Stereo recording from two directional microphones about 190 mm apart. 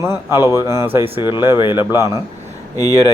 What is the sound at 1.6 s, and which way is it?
Speech, 25° left (ahead or behind).